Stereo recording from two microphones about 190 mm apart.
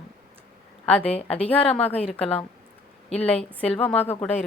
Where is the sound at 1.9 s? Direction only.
30° left (ahead or behind).